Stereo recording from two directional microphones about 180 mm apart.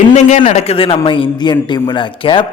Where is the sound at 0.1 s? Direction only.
40° left (ahead or behind).